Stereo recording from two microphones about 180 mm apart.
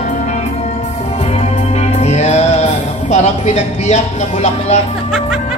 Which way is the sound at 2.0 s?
35° left (ahead or behind).